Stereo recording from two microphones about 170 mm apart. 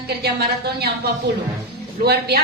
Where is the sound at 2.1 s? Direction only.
70° right (ahead or behind).